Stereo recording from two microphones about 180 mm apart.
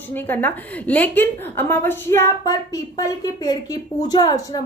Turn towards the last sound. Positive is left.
turn(degrees=20)  # may be behind; listen again after turning